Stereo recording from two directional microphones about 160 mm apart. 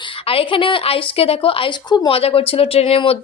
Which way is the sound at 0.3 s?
35° left (ahead or behind).